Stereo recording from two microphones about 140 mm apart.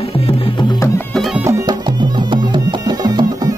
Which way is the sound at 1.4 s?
30° right (ahead or behind).